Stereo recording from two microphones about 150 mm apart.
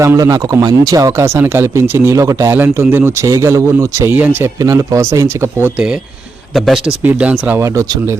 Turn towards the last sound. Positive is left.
turn(degrees=-20)  # may be behind; listen again after turning